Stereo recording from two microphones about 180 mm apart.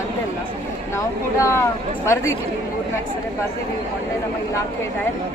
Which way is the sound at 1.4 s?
15° left (ahead or behind).